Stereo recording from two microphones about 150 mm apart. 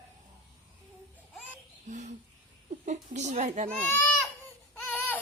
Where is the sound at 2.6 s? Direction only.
55° right (ahead or behind).